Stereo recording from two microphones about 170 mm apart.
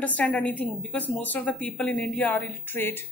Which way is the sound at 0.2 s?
10° left (ahead or behind).